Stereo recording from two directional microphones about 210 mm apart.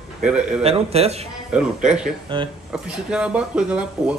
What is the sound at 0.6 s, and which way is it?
Speech, 30° right (ahead or behind).